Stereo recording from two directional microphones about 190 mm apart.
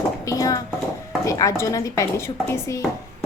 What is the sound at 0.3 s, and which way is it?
A woman's voice, 20° left (ahead or behind).